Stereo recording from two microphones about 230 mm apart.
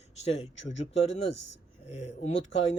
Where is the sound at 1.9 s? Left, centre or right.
Left.